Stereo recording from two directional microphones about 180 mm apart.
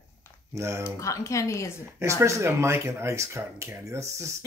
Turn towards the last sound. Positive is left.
turn(degrees=-15)  # may be behind; listen again after turning